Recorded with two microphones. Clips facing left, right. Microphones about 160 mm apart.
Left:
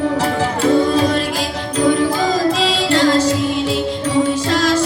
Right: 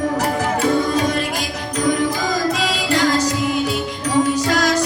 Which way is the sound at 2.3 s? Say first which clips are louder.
Left 4 dB; 30° left (ahead or behind).